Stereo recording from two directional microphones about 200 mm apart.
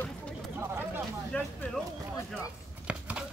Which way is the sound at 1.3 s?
5° left (ahead or behind).